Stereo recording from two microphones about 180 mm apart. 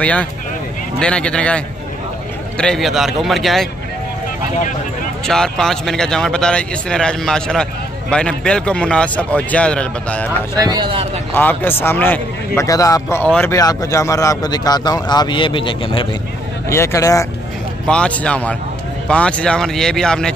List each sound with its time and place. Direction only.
0.0 s a man's voice: 5° left (ahead or behind)
5.2 s speech: 5° left (ahead or behind)
10.6 s speech: 25° right (ahead or behind)
11.3 s a man's voice: 10° left (ahead or behind); by 16.1 s 30° left (ahead or behind)
16.6 s a man's voice: 15° left (ahead or behind)
17.8 s a man's voice: 5° left (ahead or behind)